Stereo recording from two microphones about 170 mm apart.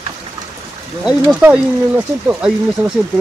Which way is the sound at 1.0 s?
5° right (ahead or behind).